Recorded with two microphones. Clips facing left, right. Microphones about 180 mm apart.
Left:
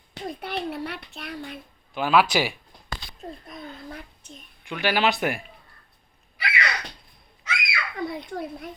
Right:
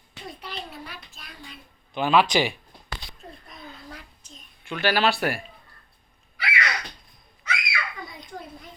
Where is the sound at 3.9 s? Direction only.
60° left (ahead or behind).